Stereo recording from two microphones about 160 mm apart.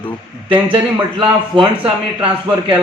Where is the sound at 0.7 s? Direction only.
35° right (ahead or behind).